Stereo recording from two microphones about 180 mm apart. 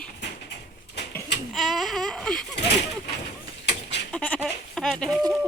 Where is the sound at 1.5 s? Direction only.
Centre (ahead or behind).